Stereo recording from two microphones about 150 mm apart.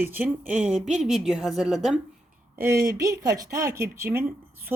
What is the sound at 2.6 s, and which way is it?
Speech, 20° right (ahead or behind).